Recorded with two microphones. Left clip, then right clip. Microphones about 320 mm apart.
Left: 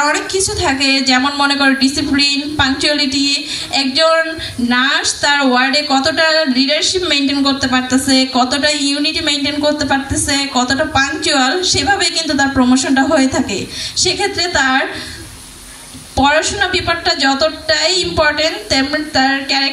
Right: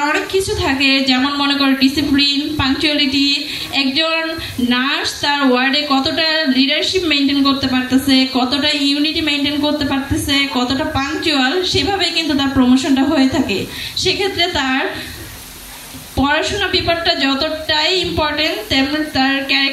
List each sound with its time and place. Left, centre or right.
0.0 s a sound: left
0.6 s a woman's voice: left
16.2 s a woman's voice: left